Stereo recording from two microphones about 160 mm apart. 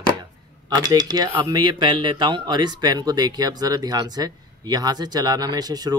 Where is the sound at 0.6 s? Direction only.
25° right (ahead or behind).